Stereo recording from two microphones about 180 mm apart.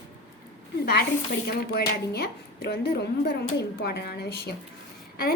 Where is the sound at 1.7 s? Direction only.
60° left (ahead or behind).